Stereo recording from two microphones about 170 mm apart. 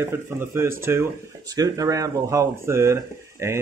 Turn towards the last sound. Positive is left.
turn(degrees=-15)  # may be behind; listen again after turning